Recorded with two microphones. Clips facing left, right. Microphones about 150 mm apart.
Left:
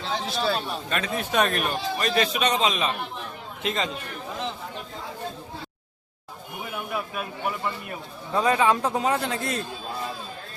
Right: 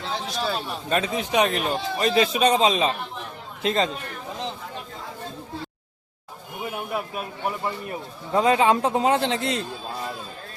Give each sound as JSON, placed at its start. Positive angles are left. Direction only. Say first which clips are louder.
{"t": 0.0, "sound": "a sound", "louder": "left 1 dB", "side_deg": -10}
{"t": 0.3, "sound": "a man's voice", "louder": "left 2 dB", "side_deg": -5}
{"t": 0.9, "sound": "speech", "louder": "right 9 dB", "side_deg": -35}
{"t": 1.1, "sound": "a man's voice", "louder": "left 1 dB", "side_deg": -15}
{"t": 6.9, "sound": "speech", "louder": "right 1 dB", "side_deg": -35}
{"t": 8.3, "sound": "a man's voice", "louder": "right 3 dB", "side_deg": -20}